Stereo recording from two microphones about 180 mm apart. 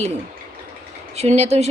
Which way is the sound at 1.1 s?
35° right (ahead or behind).